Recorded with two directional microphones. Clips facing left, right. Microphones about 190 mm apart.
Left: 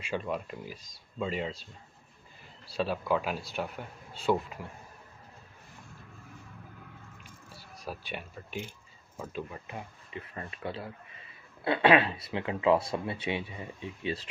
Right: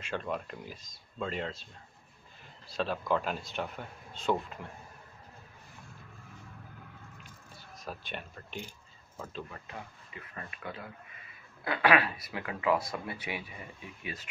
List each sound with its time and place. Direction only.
0.0 s speech: 5° left (ahead or behind)
2.6 s speech: 10° left (ahead or behind)
7.5 s speech: 10° left (ahead or behind); by 14.2 s 30° left (ahead or behind)